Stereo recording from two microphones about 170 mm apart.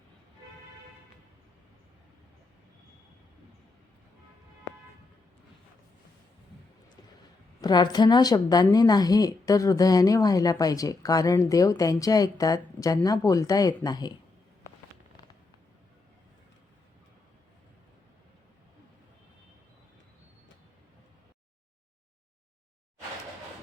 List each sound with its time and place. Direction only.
7.6 s a woman's voice: 25° left (ahead or behind)